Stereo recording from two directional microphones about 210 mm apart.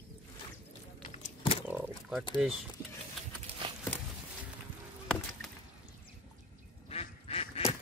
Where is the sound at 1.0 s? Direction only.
30° left (ahead or behind).